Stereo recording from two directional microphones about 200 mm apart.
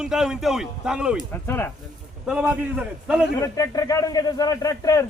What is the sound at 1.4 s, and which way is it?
Speech, 10° left (ahead or behind).